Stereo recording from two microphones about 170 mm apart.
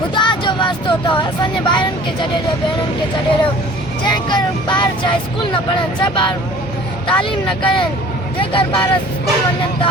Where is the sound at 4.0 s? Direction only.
25° left (ahead or behind).